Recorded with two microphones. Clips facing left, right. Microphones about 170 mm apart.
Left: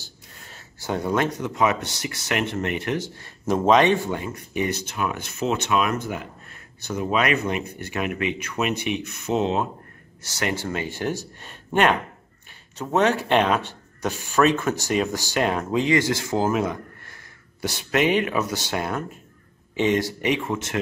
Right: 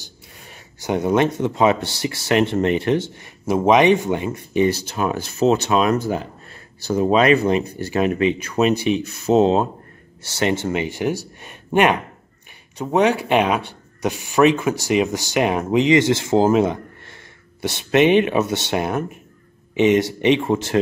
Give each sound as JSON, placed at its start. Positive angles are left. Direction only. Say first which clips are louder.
{"t": 0.0, "sound": "speech", "louder": "right 3 dB", "side_deg": -15}
{"t": 3.2, "sound": "speech", "louder": "right 3 dB", "side_deg": -15}